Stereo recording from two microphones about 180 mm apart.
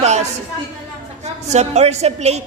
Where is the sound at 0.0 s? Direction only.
40° right (ahead or behind).